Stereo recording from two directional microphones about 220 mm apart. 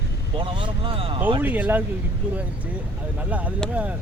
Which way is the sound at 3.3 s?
5° right (ahead or behind).